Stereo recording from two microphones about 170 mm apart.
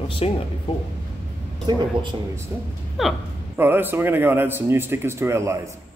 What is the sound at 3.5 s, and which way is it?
Speech, 10° right (ahead or behind).